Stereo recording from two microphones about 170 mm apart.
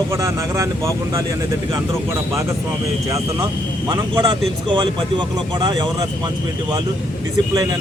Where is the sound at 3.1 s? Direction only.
20° right (ahead or behind).